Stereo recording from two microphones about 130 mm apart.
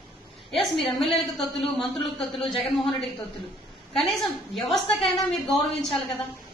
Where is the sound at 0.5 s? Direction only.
Centre (ahead or behind).